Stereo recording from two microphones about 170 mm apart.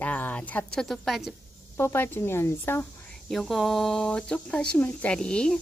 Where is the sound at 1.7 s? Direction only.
15° left (ahead or behind).